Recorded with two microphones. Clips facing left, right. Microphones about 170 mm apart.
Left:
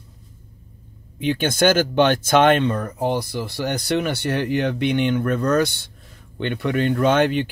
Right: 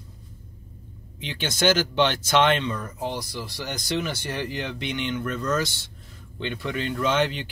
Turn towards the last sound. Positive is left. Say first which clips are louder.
# left 6 dB
turn(degrees=55)  # may be behind; listen again after turning